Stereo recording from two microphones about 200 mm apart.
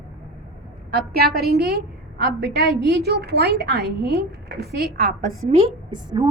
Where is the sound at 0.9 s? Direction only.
50° right (ahead or behind).